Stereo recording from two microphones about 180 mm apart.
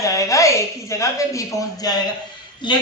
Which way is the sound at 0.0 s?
15° left (ahead or behind).